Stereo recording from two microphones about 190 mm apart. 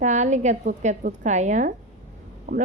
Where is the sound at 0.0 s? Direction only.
40° right (ahead or behind).